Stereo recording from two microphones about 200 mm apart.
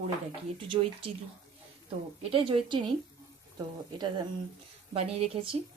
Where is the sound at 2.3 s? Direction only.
25° right (ahead or behind).